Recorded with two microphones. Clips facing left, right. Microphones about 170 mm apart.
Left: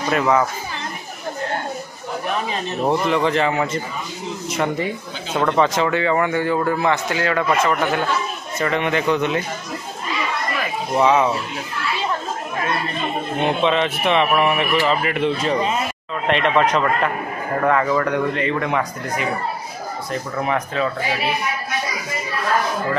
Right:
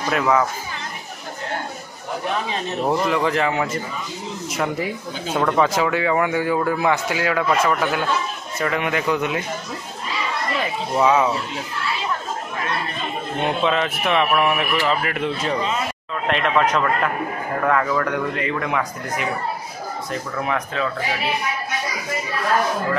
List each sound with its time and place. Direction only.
0.1 s speech: centre (ahead or behind)
2.9 s speech: centre (ahead or behind)
11.0 s speech: centre (ahead or behind)
13.6 s speech: 5° right (ahead or behind)
20.3 s speech: 5° left (ahead or behind)